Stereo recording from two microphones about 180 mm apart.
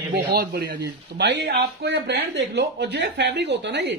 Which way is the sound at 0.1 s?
60° right (ahead or behind).